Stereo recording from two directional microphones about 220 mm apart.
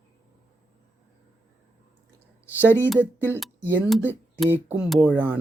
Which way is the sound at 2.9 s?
10° right (ahead or behind).